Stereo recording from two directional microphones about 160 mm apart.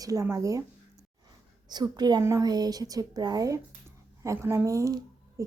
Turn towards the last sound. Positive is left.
turn(degrees=-20)  # may be behind; listen again after turning